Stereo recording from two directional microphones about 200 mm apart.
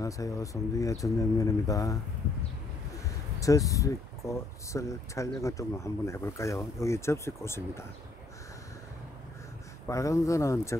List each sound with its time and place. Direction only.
0.0 s speech: 15° left (ahead or behind)
3.3 s speech: 15° left (ahead or behind)
9.8 s speech: 15° left (ahead or behind)